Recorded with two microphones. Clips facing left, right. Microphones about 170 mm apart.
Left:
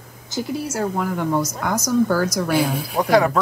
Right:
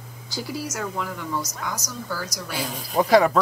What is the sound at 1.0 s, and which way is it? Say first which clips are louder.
A woman's voice: left 8 dB; 50° left (ahead or behind).